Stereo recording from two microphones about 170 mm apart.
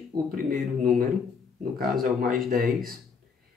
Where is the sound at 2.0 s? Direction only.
55° right (ahead or behind).